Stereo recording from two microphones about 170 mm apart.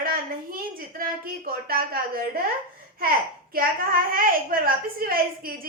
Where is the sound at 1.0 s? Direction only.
60° right (ahead or behind).